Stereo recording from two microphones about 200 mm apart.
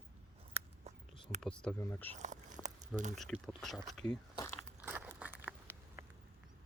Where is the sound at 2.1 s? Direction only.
35° right (ahead or behind).